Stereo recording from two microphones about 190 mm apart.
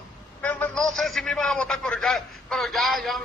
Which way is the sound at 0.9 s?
Centre (ahead or behind).